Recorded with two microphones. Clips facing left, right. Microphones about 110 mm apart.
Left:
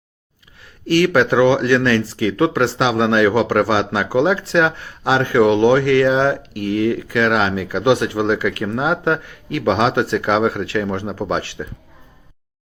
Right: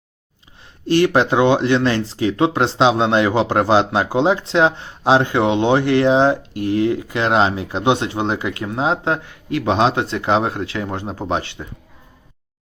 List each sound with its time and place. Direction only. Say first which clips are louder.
0.6 s speech: even; 25° right (ahead or behind)